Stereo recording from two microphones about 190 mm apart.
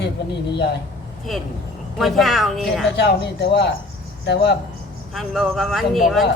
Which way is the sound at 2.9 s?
65° left (ahead or behind).